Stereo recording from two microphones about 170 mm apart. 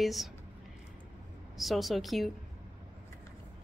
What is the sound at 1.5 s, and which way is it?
Speech, centre (ahead or behind).